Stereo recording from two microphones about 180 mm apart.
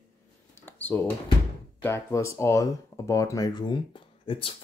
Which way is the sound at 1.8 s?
15° left (ahead or behind).